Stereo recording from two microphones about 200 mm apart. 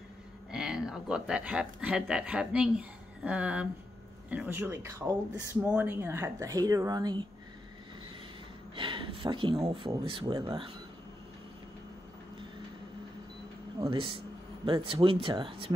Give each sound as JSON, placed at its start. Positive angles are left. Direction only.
{"t": 0.5, "sound": "speech", "side_deg": -5}
{"t": 8.7, "sound": "speech", "side_deg": -25}
{"t": 13.7, "sound": "speech", "side_deg": -25}